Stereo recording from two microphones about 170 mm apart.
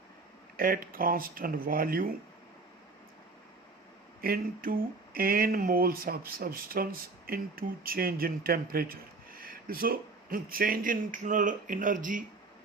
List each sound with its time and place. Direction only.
0.5 s speech: 60° right (ahead or behind)
4.2 s speech: 60° right (ahead or behind)